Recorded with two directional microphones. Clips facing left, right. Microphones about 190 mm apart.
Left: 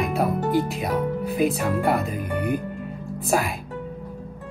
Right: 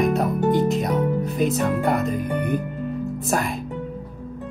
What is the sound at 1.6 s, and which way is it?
Speech, centre (ahead or behind).